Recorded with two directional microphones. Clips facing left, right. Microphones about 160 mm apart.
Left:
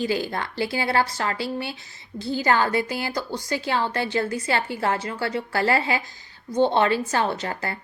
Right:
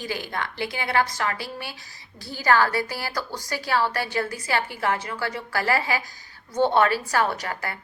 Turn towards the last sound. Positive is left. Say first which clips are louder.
# left 2 dB
turn(degrees=30)  # may be behind; listen again after turning